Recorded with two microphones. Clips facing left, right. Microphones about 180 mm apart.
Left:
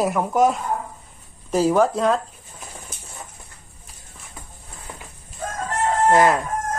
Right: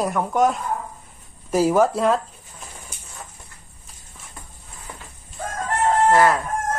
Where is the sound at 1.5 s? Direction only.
10° right (ahead or behind).